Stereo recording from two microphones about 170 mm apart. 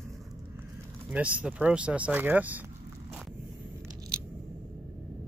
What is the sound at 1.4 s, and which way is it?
Speech, 5° right (ahead or behind).